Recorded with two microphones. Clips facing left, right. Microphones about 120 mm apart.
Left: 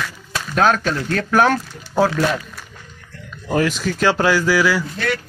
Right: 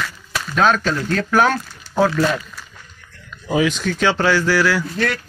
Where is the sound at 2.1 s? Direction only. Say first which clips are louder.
Right 1 dB; 15° left (ahead or behind).